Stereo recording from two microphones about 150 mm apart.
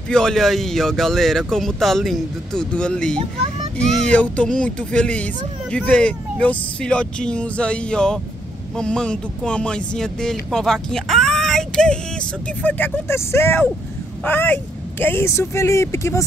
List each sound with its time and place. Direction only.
0.1 s speech: 5° left (ahead or behind); by 16.3 s 20° left (ahead or behind)